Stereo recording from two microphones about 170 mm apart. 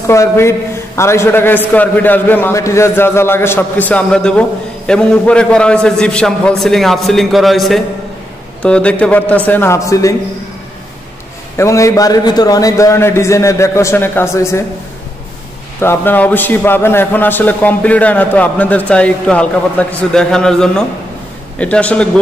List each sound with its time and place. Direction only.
0.0 s a man's voice: 15° left (ahead or behind)
11.5 s a man's voice: 15° left (ahead or behind)
15.8 s a man's voice: 10° left (ahead or behind)